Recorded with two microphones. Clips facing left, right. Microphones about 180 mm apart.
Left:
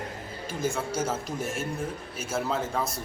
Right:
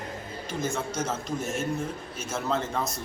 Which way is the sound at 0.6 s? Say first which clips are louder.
Left 2 dB; 10° left (ahead or behind).